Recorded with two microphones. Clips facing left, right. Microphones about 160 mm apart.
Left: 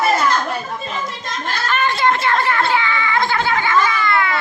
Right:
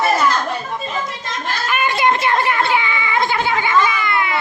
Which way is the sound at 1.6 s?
10° right (ahead or behind).